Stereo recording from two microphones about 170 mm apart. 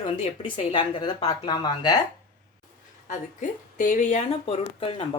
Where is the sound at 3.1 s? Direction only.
50° left (ahead or behind).